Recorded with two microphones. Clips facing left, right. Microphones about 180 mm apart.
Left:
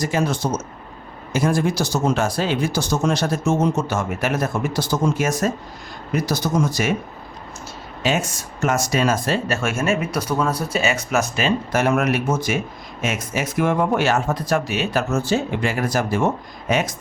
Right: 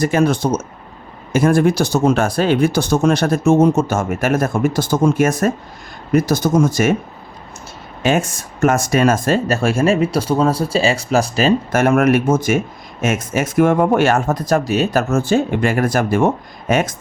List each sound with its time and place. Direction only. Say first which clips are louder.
0.0 s speech: right 6 dB; 60° right (ahead or behind)
8.0 s speech: right 5 dB; 50° right (ahead or behind); by 11.5 s 35° right (ahead or behind)
11.7 s speech: right 5 dB; 50° right (ahead or behind)